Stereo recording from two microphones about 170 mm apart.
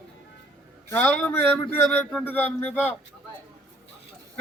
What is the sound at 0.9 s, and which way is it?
A man's voice, 10° left (ahead or behind).